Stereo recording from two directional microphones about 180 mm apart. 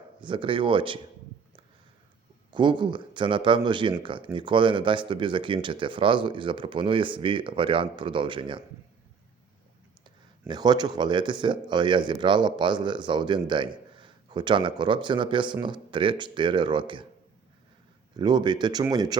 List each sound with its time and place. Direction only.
0.2 s speech: 25° right (ahead or behind)
2.5 s speech: 25° right (ahead or behind)
10.5 s speech: 25° right (ahead or behind)
18.2 s speech: 25° right (ahead or behind)